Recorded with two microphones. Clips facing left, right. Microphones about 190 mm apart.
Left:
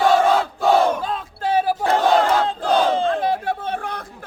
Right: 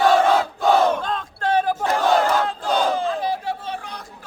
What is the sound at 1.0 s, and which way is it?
Battle cry, 5° left (ahead or behind).